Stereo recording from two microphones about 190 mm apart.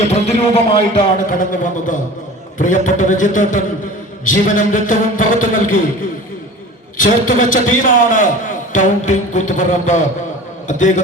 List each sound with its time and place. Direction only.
0.0 s music: 35° left (ahead or behind)
2.6 s a man's voice: 45° left (ahead or behind)
7.0 s a man's voice: 45° left (ahead or behind)
8.7 s music: 40° left (ahead or behind)